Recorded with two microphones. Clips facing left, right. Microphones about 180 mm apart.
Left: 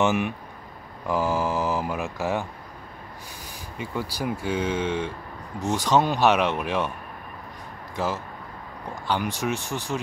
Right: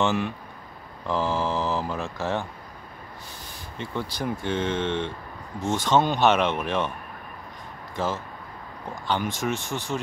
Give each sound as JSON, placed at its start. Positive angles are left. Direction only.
{"t": 0.0, "sound": "speech", "side_deg": 15}
{"t": 3.7, "sound": "speech", "side_deg": 5}
{"t": 5.6, "sound": "speech", "side_deg": 40}
{"t": 5.9, "sound": "speech", "side_deg": 5}
{"t": 7.9, "sound": "speech", "side_deg": 5}
{"t": 9.6, "sound": "speech", "side_deg": 40}